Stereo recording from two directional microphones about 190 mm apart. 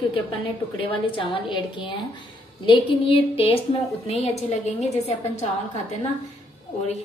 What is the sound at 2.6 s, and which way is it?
A woman's voice, 25° left (ahead or behind).